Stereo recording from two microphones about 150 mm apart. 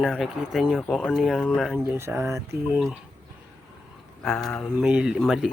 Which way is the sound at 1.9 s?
15° right (ahead or behind).